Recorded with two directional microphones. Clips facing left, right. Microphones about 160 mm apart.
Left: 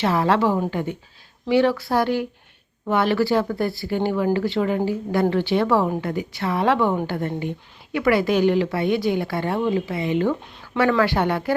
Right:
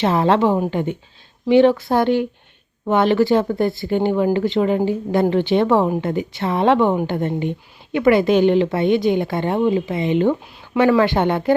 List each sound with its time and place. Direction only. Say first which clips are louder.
0.0 s a woman's voice: right 3 dB; 25° right (ahead or behind)